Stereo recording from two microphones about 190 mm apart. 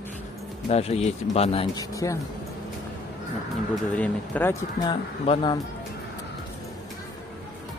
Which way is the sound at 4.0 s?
10° left (ahead or behind).